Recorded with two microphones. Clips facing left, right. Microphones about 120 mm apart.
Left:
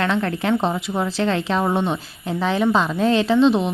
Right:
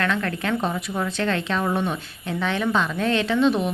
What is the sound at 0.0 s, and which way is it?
A woman's voice, 30° left (ahead or behind).